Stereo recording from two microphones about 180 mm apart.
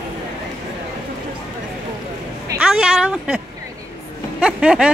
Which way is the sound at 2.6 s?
5° right (ahead or behind).